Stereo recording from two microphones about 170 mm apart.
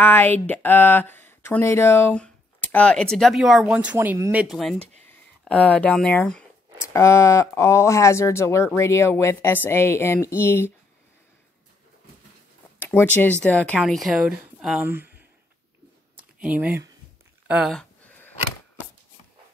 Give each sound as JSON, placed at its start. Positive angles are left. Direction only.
{"t": 0.0, "sound": "speech", "side_deg": 10}
{"t": 6.9, "sound": "speech", "side_deg": 15}
{"t": 12.7, "sound": "speech", "side_deg": 10}
{"t": 16.4, "sound": "speech", "side_deg": -10}
{"t": 17.7, "sound": "a sound", "side_deg": 10}